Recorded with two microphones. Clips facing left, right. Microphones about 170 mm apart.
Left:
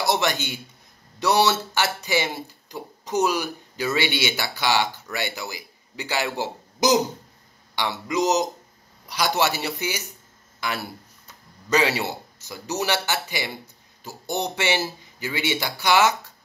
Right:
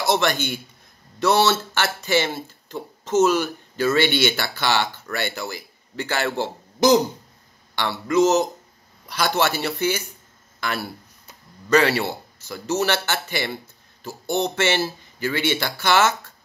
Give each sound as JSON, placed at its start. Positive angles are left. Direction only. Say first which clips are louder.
{"t": 0.0, "sound": "a man's voice", "louder": "right 2 dB", "side_deg": 15}
{"t": 12.0, "sound": "speech", "louder": "right 2 dB", "side_deg": 15}